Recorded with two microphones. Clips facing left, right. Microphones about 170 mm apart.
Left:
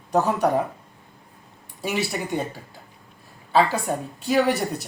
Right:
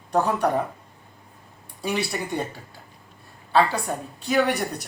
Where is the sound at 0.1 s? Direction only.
10° left (ahead or behind).